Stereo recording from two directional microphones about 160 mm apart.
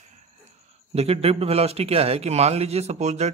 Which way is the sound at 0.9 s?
40° right (ahead or behind).